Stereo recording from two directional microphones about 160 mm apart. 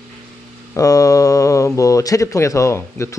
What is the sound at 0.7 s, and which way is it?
Speech, 20° left (ahead or behind).